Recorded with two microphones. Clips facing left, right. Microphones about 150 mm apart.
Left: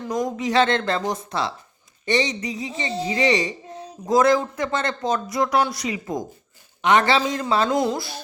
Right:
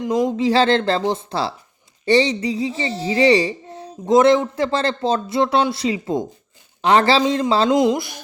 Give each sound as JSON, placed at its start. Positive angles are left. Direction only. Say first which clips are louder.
{"t": 0.0, "sound": "speech", "louder": "right 6 dB", "side_deg": -25}